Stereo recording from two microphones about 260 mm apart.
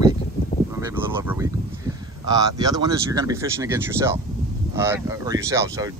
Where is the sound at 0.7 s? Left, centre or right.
Centre.